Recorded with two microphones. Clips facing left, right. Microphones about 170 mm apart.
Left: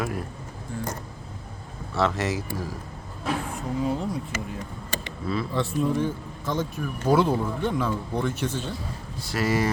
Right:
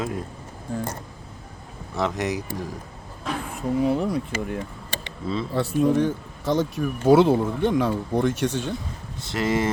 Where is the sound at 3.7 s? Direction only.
65° right (ahead or behind).